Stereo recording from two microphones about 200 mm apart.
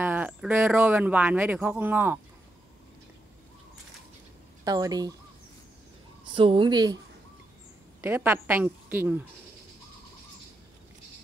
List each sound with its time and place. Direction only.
0.0 s speech: 10° right (ahead or behind)
4.6 s speech: 20° right (ahead or behind)
6.3 s speech: 25° right (ahead or behind)
8.0 s speech: 10° right (ahead or behind)